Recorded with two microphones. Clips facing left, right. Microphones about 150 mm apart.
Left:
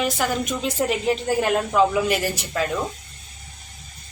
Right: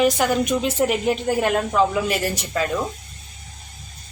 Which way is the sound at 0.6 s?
Centre (ahead or behind).